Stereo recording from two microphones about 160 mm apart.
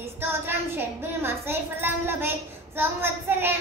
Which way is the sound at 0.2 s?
15° right (ahead or behind).